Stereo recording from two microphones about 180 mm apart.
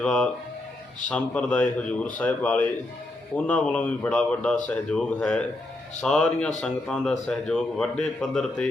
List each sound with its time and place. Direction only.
0.0 s speech: 5° left (ahead or behind)